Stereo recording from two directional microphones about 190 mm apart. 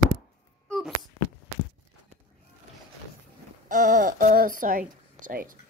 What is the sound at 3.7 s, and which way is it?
Speech, 40° right (ahead or behind).